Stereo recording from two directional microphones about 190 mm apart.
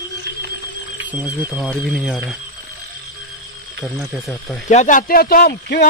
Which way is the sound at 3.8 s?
Centre (ahead or behind).